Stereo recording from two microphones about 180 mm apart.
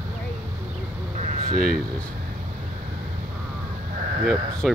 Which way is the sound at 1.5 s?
40° left (ahead or behind).